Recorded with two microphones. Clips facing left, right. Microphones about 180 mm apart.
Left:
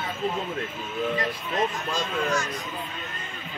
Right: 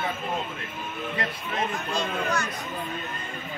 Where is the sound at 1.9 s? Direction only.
60° right (ahead or behind).